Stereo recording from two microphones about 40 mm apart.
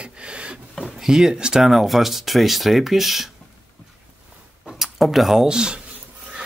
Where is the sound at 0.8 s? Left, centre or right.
Centre.